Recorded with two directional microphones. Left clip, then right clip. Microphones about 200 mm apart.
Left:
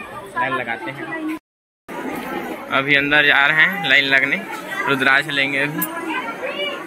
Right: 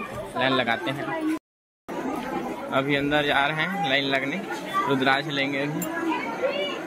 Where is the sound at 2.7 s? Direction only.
10° right (ahead or behind).